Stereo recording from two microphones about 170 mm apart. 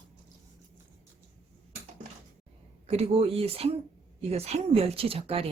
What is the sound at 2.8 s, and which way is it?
Speech, 40° right (ahead or behind).